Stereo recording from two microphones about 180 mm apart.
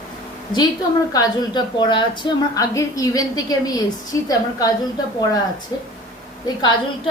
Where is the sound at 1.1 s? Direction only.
20° left (ahead or behind).